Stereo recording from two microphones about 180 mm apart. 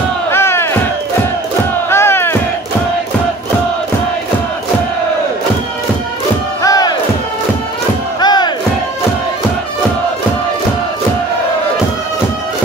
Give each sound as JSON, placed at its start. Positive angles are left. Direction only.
{"t": 0.3, "sound": "crowd", "side_deg": 15}
{"t": 1.9, "sound": "music", "side_deg": 15}
{"t": 6.6, "sound": "music", "side_deg": 20}
{"t": 8.2, "sound": "crowd", "side_deg": 25}